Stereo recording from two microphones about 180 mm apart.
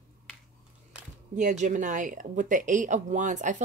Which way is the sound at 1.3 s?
45° right (ahead or behind).